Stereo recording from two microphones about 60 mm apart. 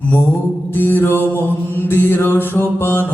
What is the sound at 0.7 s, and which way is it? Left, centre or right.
Mantra, left.